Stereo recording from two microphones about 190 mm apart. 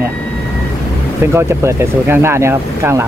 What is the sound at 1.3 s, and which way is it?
Speech, 15° right (ahead or behind).